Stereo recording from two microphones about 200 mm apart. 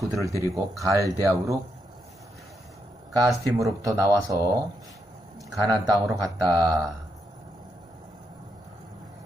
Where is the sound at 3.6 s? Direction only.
15° right (ahead or behind).